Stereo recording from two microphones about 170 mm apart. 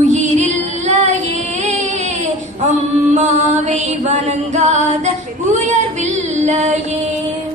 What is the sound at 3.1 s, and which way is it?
Music, 45° right (ahead or behind).